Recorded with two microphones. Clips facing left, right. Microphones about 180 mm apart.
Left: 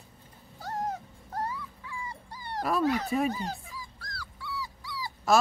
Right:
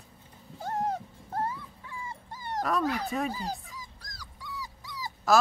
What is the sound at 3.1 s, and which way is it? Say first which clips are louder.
Speech: left 4 dB; 10° left (ahead or behind).